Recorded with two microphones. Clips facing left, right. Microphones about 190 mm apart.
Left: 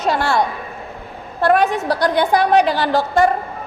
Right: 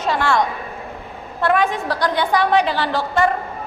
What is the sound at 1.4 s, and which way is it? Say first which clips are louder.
A woman's voice: left 3 dB; 40° left (ahead or behind).